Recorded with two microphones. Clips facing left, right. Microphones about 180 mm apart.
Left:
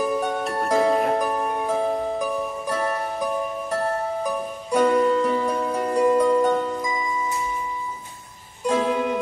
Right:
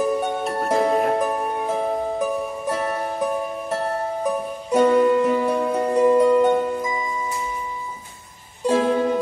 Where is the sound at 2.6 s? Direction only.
25° right (ahead or behind).